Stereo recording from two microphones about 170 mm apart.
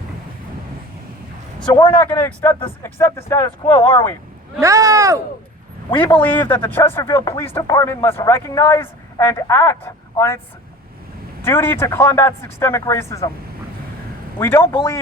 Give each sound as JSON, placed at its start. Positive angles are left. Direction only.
{"t": 1.6, "sound": "a man's voice", "side_deg": 25}
{"t": 2.2, "sound": "a man's voice", "side_deg": 10}
{"t": 3.8, "sound": "speech", "side_deg": 15}
{"t": 4.6, "sound": "speech", "side_deg": -20}
{"t": 6.1, "sound": "speech", "side_deg": 10}
{"t": 11.4, "sound": "speech", "side_deg": 15}
{"t": 14.3, "sound": "speech", "side_deg": 15}